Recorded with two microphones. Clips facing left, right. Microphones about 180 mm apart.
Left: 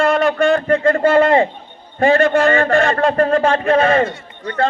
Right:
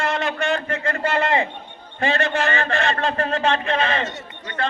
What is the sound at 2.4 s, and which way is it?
A man's voice, 55° left (ahead or behind).